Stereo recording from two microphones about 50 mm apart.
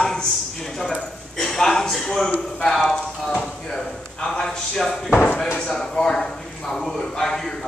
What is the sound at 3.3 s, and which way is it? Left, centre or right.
Speech, left.